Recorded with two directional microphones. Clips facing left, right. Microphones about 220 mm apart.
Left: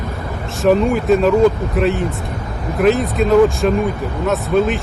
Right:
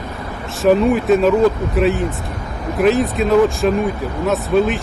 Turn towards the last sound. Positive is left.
turn(degrees=0)  # may be behind; listen again after turning